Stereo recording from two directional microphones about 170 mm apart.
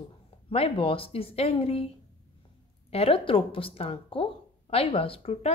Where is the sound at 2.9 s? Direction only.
35° left (ahead or behind).